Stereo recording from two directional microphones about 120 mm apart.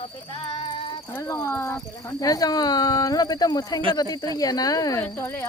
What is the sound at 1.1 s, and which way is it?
Speech, 25° left (ahead or behind).